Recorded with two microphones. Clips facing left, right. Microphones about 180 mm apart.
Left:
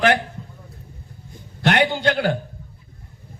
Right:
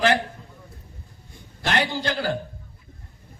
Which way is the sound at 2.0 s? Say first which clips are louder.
Left 5 dB; 65° left (ahead or behind).